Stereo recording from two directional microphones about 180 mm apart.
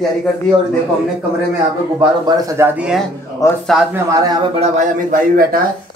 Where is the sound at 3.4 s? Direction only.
15° left (ahead or behind).